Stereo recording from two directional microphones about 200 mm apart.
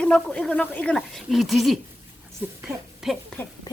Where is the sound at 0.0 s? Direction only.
5° left (ahead or behind).